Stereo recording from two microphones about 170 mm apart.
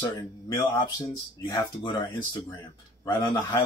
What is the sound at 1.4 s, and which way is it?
Speech, 25° left (ahead or behind).